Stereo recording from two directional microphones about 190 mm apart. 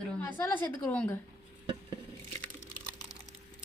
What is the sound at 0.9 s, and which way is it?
Speech, 10° left (ahead or behind).